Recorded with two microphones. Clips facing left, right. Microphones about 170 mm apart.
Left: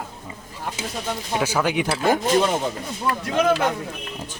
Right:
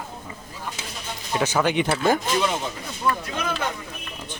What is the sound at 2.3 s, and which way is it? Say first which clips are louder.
Speech: left 4 dB; 40° left (ahead or behind).